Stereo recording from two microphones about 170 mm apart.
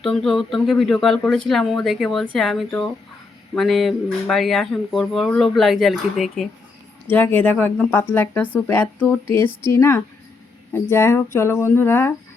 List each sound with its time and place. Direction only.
0.0 s speech: centre (ahead or behind)